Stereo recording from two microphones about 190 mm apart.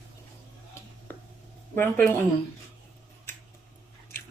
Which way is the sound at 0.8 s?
15° left (ahead or behind).